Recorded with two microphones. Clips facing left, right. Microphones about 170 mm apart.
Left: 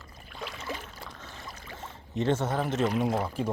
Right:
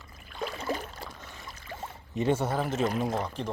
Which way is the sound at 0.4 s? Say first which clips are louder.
Right 5 dB; 40° right (ahead or behind).